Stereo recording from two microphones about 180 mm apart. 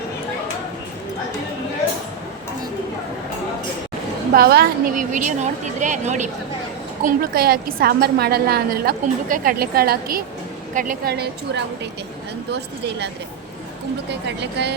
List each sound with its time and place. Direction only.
4.4 s a woman's voice: 55° right (ahead or behind)
7.0 s a woman's voice: 55° right (ahead or behind)
14.1 s speech: 70° right (ahead or behind)